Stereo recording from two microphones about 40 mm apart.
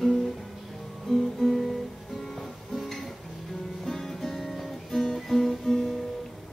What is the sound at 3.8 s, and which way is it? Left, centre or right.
Guitar, centre.